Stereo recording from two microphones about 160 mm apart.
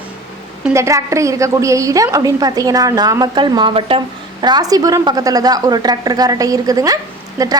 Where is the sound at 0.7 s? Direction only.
20° right (ahead or behind).